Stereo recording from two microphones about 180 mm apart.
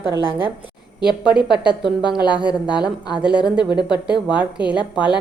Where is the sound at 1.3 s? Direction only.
5° right (ahead or behind).